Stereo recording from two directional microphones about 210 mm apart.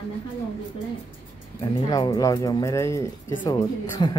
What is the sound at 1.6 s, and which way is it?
Speech, 20° left (ahead or behind).